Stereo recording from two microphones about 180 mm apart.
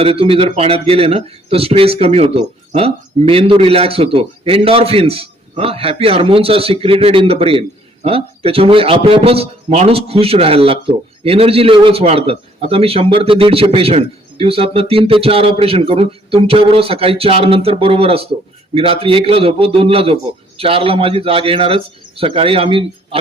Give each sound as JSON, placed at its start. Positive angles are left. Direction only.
{"t": 0.0, "sound": "speech", "side_deg": -30}